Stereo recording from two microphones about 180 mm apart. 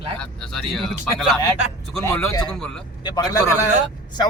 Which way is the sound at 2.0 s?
15° left (ahead or behind).